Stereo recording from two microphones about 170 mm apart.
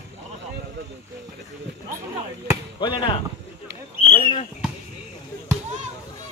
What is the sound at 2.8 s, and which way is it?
Chop, 30° left (ahead or behind).